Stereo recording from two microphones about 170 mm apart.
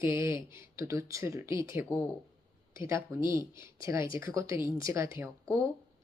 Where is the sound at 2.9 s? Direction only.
15° right (ahead or behind).